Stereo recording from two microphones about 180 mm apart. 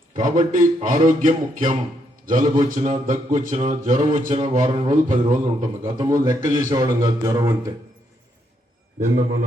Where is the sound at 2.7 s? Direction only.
40° right (ahead or behind).